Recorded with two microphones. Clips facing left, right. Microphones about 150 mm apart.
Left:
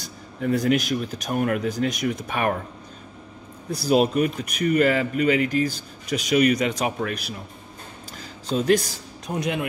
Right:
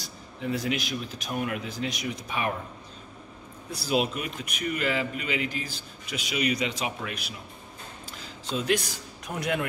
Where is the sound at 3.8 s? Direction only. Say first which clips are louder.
Left 8 dB; 45° left (ahead or behind).